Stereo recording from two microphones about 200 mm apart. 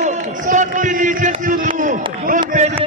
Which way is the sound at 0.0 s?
35° right (ahead or behind).